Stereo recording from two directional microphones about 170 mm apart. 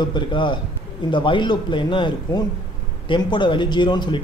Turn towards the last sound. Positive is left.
turn(degrees=25)  # may be behind; listen again after turning